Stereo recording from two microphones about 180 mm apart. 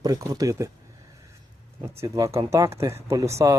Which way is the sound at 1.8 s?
15° right (ahead or behind).